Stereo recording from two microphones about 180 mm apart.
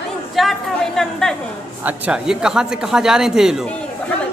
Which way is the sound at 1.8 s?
5° right (ahead or behind).